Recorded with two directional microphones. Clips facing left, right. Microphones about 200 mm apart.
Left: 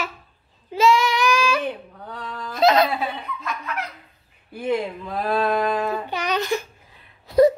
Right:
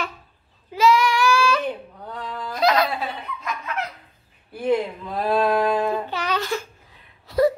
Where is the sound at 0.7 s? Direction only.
25° left (ahead or behind).